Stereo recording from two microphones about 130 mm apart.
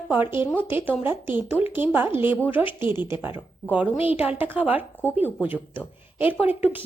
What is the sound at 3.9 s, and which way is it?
Speech, 45° left (ahead or behind).